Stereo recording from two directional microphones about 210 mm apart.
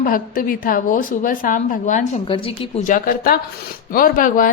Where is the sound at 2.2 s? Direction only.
25° left (ahead or behind).